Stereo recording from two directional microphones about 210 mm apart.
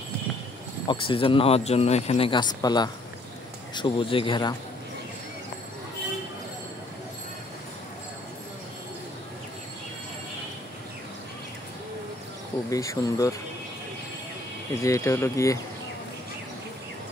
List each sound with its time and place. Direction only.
0.8 s speech: 25° left (ahead or behind)
12.6 s speech: 15° left (ahead or behind)
14.8 s speech: 15° left (ahead or behind)